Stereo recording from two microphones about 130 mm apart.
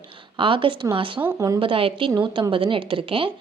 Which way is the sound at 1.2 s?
25° right (ahead or behind).